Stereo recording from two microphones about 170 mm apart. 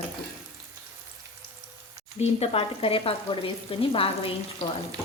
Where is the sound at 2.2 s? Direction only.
35° left (ahead or behind).